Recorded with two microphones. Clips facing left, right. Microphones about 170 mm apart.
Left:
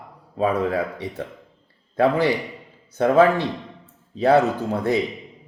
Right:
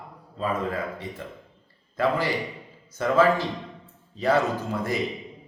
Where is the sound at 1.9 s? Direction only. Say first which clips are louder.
Left 6 dB; 65° left (ahead or behind).